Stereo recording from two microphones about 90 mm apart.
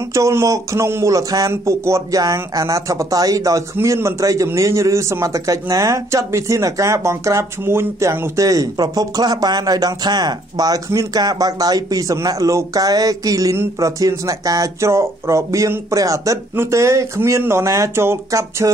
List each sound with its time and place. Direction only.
0.1 s speech: 30° right (ahead or behind)